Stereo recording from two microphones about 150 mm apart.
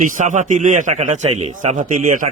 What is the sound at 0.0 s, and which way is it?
A man's voice, 55° right (ahead or behind).